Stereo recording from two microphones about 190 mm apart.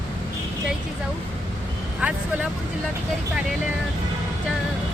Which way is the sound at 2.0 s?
5° right (ahead or behind).